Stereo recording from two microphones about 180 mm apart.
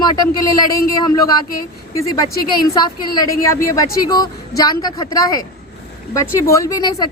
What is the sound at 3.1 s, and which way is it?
Speech, 20° left (ahead or behind).